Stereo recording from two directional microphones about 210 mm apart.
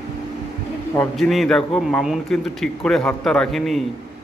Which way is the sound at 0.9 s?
Centre (ahead or behind).